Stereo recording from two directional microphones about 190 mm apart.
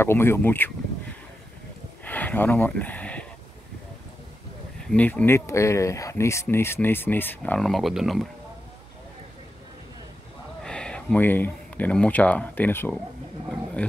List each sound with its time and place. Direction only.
0.0 s speech: 10° left (ahead or behind)
2.0 s a sound: 10° left (ahead or behind)
4.8 s speech: 10° left (ahead or behind)
10.6 s speech: 5° left (ahead or behind)